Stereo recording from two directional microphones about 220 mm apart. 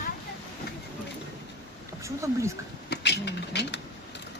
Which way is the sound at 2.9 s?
50° left (ahead or behind).